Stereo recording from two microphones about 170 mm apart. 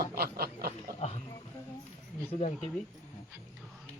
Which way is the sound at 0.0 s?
65° right (ahead or behind).